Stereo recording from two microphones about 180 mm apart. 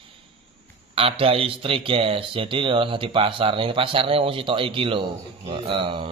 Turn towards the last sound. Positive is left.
turn(degrees=-30)  # may be behind; listen again after turning